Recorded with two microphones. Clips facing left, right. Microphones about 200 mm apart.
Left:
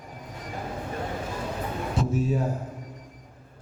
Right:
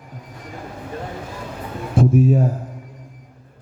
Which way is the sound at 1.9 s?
55° right (ahead or behind).